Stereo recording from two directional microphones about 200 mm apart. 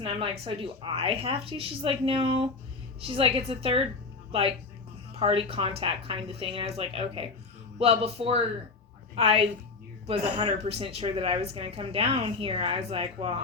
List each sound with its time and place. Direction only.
0.0 s a woman's voice: 30° right (ahead or behind)